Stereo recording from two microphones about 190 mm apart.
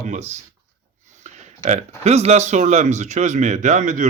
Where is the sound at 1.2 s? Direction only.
40° right (ahead or behind).